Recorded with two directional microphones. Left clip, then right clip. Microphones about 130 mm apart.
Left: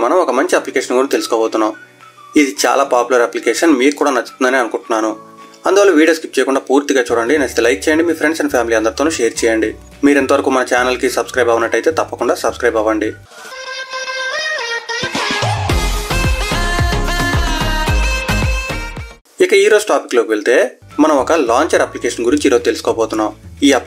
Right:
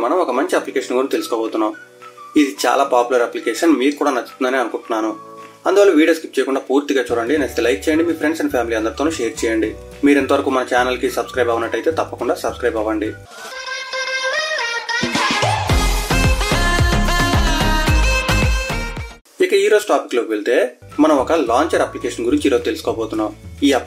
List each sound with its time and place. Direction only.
0.0 s speech: 30° left (ahead or behind)
13.7 s music: centre (ahead or behind)
19.3 s speech: 35° left (ahead or behind)